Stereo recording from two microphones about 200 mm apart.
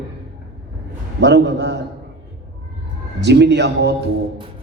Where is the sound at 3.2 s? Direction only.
60° right (ahead or behind).